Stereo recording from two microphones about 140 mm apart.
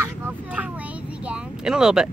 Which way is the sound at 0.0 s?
15° right (ahead or behind).